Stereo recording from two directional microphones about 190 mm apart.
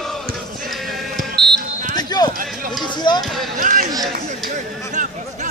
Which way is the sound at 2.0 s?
20° left (ahead or behind).